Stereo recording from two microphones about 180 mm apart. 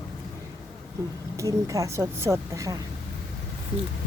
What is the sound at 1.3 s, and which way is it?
Speech, 20° right (ahead or behind).